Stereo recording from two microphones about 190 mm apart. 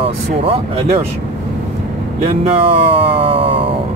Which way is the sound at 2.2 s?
30° right (ahead or behind).